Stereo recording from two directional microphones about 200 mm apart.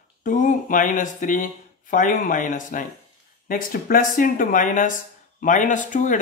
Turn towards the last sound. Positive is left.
turn(degrees=40)  # may be behind; listen again after turning